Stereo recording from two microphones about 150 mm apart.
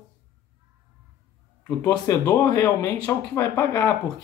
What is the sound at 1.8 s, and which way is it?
Speech, 25° left (ahead or behind).